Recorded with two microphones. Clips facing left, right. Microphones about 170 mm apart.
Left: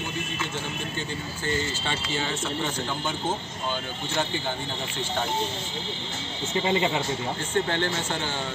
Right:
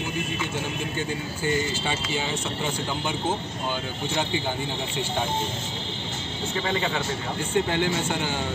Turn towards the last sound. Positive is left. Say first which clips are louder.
# right 2 dB
turn(degrees=-10)  # may be behind; listen again after turning